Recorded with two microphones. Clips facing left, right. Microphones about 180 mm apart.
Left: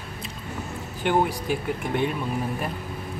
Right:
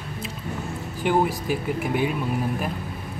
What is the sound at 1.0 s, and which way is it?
Speech, 5° right (ahead or behind).